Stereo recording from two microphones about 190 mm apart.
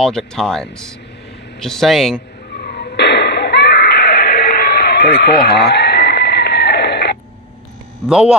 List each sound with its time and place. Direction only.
0.0 s speech: 5° left (ahead or behind)
2.5 s a sound: 60° left (ahead or behind)
8.1 s speech: 5° right (ahead or behind)